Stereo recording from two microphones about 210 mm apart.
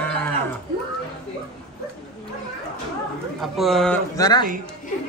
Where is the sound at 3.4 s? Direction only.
Centre (ahead or behind).